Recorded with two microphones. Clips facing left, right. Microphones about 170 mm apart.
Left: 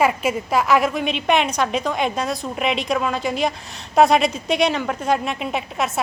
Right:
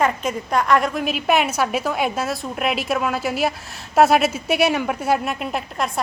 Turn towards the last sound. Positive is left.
turn(degrees=0)  # may be behind; listen again after turning